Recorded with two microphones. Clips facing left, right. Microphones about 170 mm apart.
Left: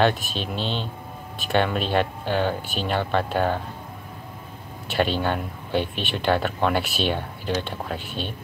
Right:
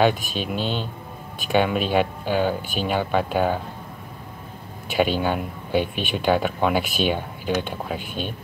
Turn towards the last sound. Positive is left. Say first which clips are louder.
# right 2 dB
turn(degrees=-10)  # may be behind; listen again after turning